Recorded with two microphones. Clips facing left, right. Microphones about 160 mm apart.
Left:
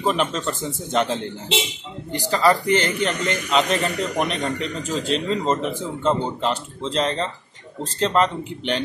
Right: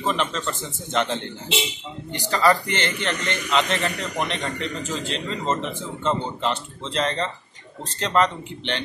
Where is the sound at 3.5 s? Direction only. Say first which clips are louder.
Left 2 dB; centre (ahead or behind).